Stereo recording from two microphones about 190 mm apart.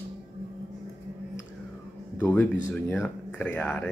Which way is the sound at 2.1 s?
10° left (ahead or behind).